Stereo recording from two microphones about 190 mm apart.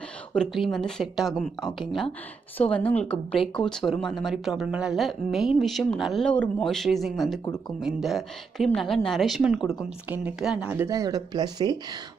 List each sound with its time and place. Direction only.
0.3 s speech: centre (ahead or behind)
10.9 s speech: 20° right (ahead or behind)